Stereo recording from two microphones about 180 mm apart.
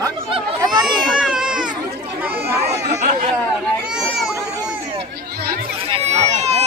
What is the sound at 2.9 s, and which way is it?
Chatter, 45° right (ahead or behind).